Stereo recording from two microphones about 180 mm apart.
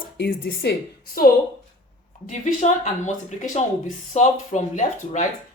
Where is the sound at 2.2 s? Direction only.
45° left (ahead or behind).